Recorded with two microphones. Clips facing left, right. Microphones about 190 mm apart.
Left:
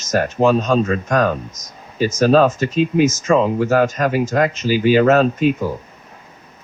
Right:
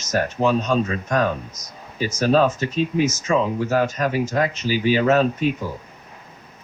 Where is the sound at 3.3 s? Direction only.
80° left.